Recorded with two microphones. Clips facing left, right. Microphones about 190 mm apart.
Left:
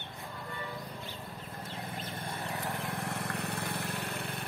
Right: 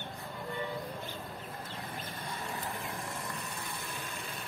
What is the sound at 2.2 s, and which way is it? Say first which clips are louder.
Vehicle: left 2 dB; 60° left (ahead or behind).